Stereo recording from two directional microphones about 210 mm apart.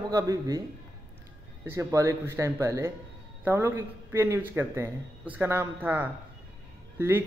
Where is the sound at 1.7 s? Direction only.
15° right (ahead or behind).